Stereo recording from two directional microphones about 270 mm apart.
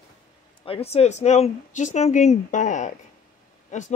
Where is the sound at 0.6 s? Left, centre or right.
Left.